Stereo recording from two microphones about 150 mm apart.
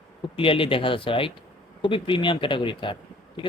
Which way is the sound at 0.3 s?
35° left (ahead or behind).